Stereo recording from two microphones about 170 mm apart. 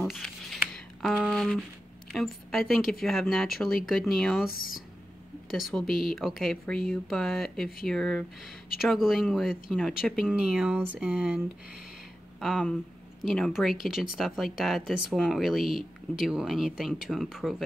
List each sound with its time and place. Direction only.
0.1 s a sound: centre (ahead or behind)
2.1 s speech: centre (ahead or behind)
4.5 s speech: 60° left (ahead or behind)
5.5 s speech: centre (ahead or behind)